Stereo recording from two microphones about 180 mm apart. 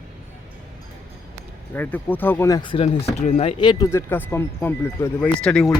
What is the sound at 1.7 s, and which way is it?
Speech, 10° left (ahead or behind).